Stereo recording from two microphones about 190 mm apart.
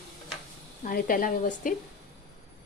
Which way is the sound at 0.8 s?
45° left (ahead or behind).